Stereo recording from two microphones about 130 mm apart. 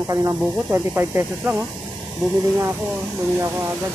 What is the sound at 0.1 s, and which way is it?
Speech, 25° right (ahead or behind).